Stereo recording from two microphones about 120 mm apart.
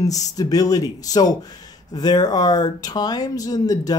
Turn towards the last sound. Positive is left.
turn(degrees=30)  # may be behind; listen again after turning